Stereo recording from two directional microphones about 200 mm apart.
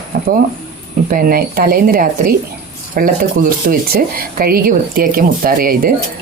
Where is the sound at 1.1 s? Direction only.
45° right (ahead or behind).